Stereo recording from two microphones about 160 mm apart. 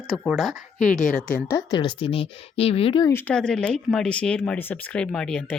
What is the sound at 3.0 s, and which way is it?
Speech, 15° left (ahead or behind).